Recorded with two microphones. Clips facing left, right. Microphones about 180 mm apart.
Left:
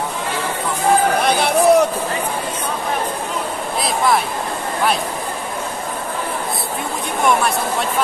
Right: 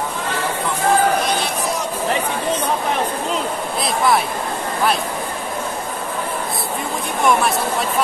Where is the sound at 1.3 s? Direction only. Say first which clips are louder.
Left 10 dB; 60° left (ahead or behind).